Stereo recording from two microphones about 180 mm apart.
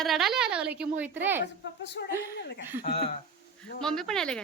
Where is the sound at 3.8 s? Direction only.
5° left (ahead or behind).